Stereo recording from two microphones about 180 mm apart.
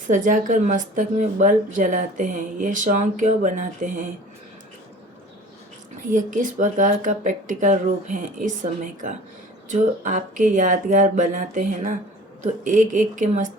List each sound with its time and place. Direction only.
0.1 s speech: 45° right (ahead or behind)
6.1 s speech: 45° right (ahead or behind)